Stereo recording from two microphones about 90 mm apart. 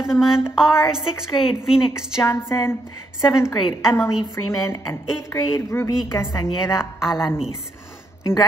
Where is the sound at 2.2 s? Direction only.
30° left (ahead or behind).